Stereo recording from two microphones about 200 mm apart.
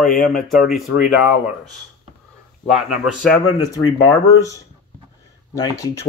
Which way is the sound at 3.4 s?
20° left (ahead or behind).